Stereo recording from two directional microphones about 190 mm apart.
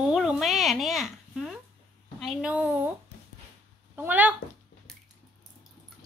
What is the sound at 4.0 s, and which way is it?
Speech, 10° right (ahead or behind).